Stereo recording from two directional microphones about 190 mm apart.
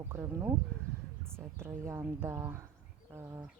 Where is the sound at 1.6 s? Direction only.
15° right (ahead or behind).